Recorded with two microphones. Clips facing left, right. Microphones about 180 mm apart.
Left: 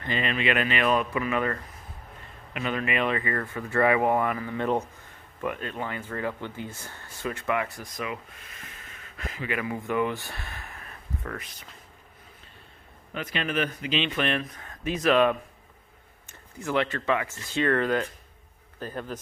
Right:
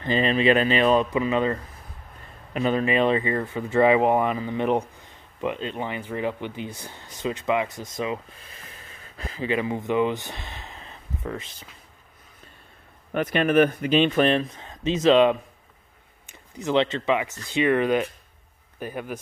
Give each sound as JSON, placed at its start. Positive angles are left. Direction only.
{"t": 0.0, "sound": "speech", "side_deg": -30}
{"t": 13.1, "sound": "speech", "side_deg": -50}